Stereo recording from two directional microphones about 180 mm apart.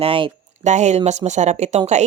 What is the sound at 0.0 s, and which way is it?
Speech, 30° right (ahead or behind).